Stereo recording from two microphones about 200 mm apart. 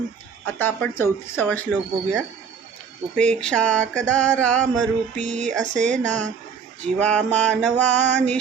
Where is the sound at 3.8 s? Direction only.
35° right (ahead or behind).